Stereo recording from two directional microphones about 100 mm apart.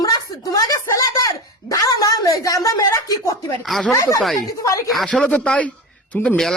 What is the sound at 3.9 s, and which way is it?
Speech, 35° left (ahead or behind).